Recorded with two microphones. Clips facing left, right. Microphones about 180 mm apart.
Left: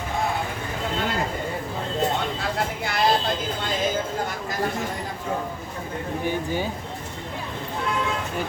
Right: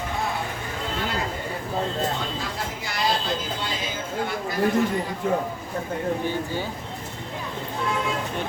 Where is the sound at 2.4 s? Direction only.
55° left (ahead or behind).